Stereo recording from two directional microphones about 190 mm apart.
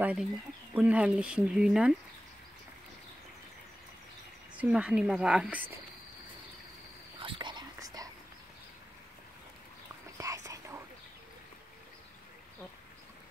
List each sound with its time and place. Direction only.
0.0 s a woman's voice: 5° right (ahead or behind)
4.6 s a woman's voice: 5° right (ahead or behind)
7.2 s whispering: 25° right (ahead or behind)
10.1 s whispering: 15° right (ahead or behind)